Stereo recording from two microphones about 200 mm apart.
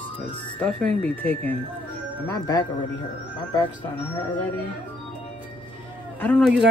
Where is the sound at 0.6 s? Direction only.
5° left (ahead or behind).